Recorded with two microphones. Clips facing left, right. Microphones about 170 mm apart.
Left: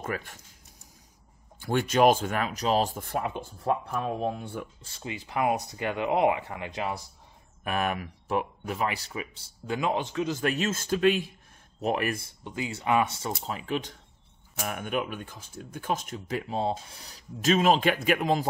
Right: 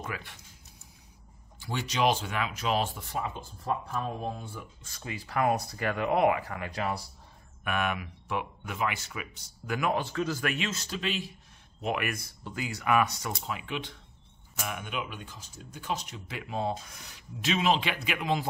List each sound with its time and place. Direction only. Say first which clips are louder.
0.0 s speech: left 5 dB; 45° left (ahead or behind)
1.6 s speech: left 7 dB; 55° left (ahead or behind)
4.8 s speech: left 2 dB; 25° left (ahead or behind)
7.6 s speech: left 2 dB; 35° left (ahead or behind); by 10.4 s 20° left (ahead or behind)
10.4 s speech: left 4 dB; 40° left (ahead or behind)
11.8 s speech: left 4 dB; 35° left (ahead or behind)
13.4 s speech: left 4 dB; 35° left (ahead or behind)